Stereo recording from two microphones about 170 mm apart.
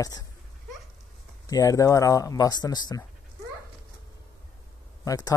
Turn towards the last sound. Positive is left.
turn(degrees=20)  # may be behind; listen again after turning